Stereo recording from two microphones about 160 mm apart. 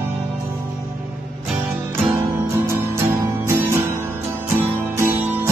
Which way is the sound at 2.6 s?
15° right (ahead or behind).